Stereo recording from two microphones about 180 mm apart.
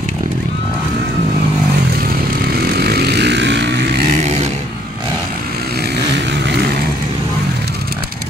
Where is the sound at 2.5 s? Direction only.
60° right (ahead or behind).